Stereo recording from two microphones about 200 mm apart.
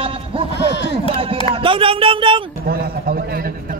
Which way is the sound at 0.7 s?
60° left (ahead or behind).